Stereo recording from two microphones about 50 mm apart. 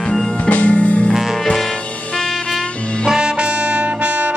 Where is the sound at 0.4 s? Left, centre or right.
Left.